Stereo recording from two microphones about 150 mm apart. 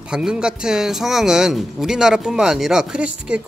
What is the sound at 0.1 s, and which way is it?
Speech, 5° right (ahead or behind).